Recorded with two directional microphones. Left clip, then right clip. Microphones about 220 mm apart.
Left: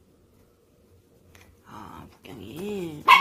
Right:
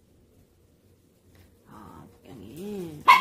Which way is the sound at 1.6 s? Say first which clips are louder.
Left 5 dB; 10° left (ahead or behind).